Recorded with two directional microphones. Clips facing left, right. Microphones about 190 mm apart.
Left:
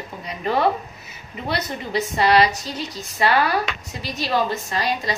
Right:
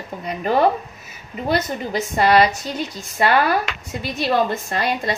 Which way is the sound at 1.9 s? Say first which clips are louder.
Right 1 dB; 50° right (ahead or behind).